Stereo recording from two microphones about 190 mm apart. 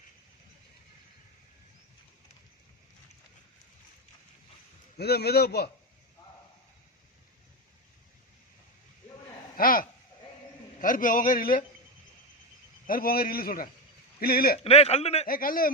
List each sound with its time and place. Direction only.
4.9 s a man's voice: 55° left (ahead or behind)
9.6 s a sound: 50° left (ahead or behind)
10.8 s a man's voice: 45° left (ahead or behind)
12.9 s a man's voice: 50° left (ahead or behind)
14.6 s a man's voice: 30° left (ahead or behind)
15.3 s a man's voice: 50° left (ahead or behind)